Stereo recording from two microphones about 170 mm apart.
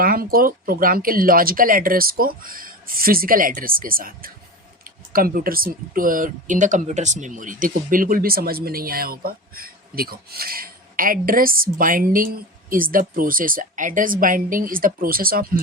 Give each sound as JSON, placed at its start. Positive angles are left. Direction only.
{"t": 0.0, "sound": "speech", "side_deg": -60}